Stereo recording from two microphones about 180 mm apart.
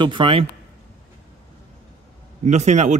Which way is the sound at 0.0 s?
25° right (ahead or behind).